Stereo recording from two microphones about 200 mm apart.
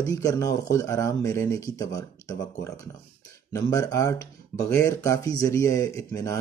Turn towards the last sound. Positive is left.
turn(degrees=15)  # may be behind; listen again after turning